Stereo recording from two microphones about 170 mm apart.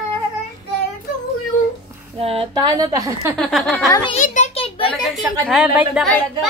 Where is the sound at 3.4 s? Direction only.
Centre (ahead or behind).